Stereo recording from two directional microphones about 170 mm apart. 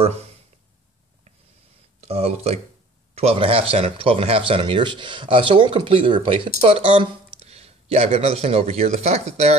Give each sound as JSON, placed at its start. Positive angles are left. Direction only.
{"t": 2.0, "sound": "speech", "side_deg": -35}